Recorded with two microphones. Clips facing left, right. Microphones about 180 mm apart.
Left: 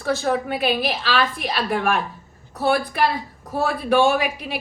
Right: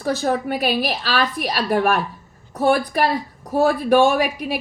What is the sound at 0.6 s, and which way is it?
A woman's voice, 40° right (ahead or behind).